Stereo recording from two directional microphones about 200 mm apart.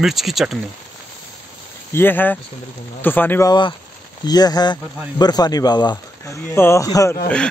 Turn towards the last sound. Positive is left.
turn(degrees=15)  # may be behind; listen again after turning